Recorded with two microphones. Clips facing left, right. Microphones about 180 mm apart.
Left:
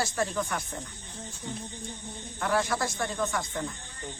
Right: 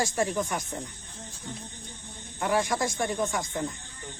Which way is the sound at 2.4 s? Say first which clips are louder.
Right 2 dB; 15° right (ahead or behind).